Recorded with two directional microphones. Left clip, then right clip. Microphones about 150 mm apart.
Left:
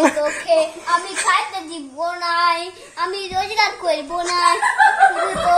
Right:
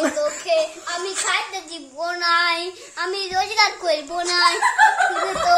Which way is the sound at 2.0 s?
30° right (ahead or behind).